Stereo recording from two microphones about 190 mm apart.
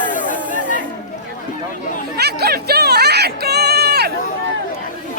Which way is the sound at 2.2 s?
55° right (ahead or behind).